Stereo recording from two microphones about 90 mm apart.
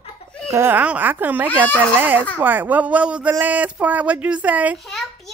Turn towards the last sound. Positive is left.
turn(degrees=-15)  # may be behind; listen again after turning